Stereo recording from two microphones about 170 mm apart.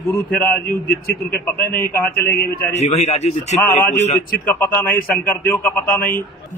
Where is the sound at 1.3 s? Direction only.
10° left (ahead or behind).